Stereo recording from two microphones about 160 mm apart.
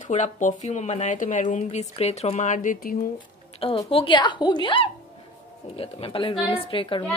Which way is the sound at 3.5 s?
35° left (ahead or behind).